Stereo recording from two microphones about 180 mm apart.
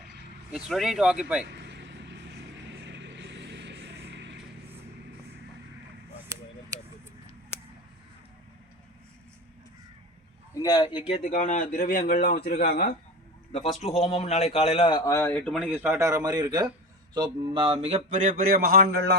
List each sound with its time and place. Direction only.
0.5 s speech: centre (ahead or behind)
1.5 s vehicle: 75° right (ahead or behind)
6.3 s a sound: 15° right (ahead or behind)
10.5 s speech: 20° left (ahead or behind); by 12.9 s 55° left (ahead or behind)
13.8 s a man's voice: 35° left (ahead or behind)
15.1 s speech: 10° left (ahead or behind)
15.6 s a man's voice: 10° right (ahead or behind)
17.2 s a sound: 25° right (ahead or behind); by 19.1 s 60° right (ahead or behind)